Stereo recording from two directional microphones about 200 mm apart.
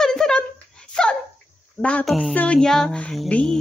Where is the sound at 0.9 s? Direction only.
5° left (ahead or behind).